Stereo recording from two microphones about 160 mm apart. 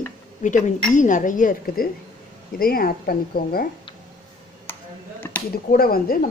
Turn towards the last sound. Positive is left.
turn(degrees=65)  # may be behind; listen again after turning